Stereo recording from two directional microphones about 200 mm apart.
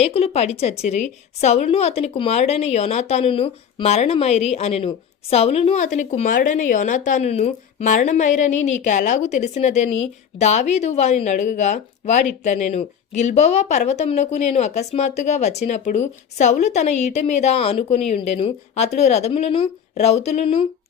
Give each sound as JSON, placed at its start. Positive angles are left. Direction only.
{"t": 0.0, "sound": "a woman's voice", "side_deg": 30}